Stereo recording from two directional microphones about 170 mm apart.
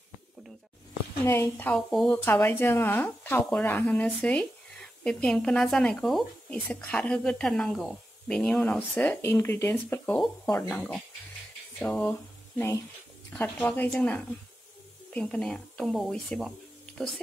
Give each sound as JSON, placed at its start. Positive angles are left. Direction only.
{"t": 1.2, "sound": "speech", "side_deg": 15}
{"t": 1.9, "sound": "speech", "side_deg": 0}
{"t": 2.2, "sound": "speech", "side_deg": 10}
{"t": 11.8, "sound": "speech", "side_deg": 10}